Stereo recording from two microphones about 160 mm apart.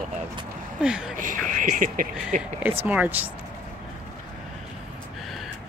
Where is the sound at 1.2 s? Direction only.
55° right (ahead or behind).